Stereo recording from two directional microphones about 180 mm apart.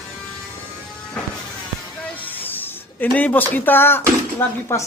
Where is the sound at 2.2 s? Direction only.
10° left (ahead or behind).